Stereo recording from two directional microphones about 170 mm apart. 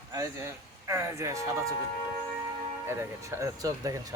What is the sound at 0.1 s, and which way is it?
Speech, 15° right (ahead or behind).